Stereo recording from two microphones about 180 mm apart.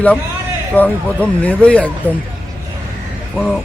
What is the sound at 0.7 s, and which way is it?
Speech, 5° left (ahead or behind).